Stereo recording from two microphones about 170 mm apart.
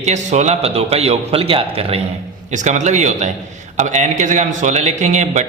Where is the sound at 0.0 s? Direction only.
45° right (ahead or behind).